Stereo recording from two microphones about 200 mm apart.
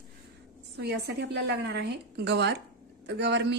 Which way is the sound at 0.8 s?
55° right (ahead or behind).